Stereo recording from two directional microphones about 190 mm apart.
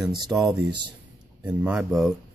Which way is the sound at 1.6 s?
5° right (ahead or behind).